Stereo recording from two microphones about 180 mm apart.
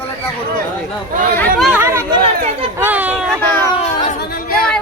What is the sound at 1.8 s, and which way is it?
Speech, 15° right (ahead or behind).